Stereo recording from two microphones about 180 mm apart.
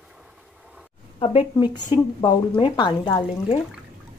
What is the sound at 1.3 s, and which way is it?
Speech, 25° left (ahead or behind).